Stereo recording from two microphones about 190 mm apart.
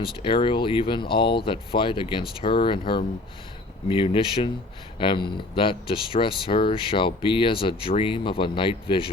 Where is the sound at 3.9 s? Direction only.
30° left (ahead or behind).